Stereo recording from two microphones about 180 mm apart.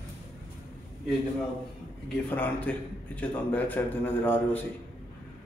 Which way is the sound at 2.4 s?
10° left (ahead or behind).